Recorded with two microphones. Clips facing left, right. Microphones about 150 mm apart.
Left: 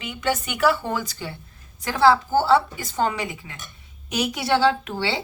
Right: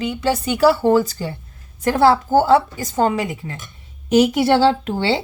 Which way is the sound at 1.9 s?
50° right (ahead or behind).